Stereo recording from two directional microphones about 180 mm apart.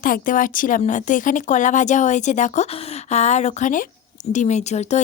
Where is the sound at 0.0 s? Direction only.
50° left (ahead or behind).